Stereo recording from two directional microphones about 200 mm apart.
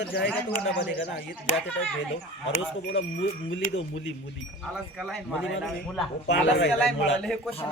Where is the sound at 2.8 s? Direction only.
65° left (ahead or behind).